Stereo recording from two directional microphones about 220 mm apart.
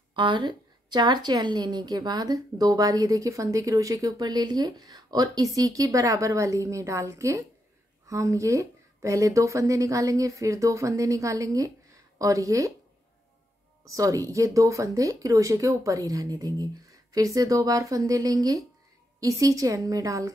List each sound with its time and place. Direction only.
0.1 s a woman's voice: 20° right (ahead or behind)
13.8 s a woman's voice: 15° right (ahead or behind)